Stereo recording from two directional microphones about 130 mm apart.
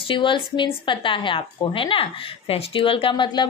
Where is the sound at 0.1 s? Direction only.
40° left (ahead or behind).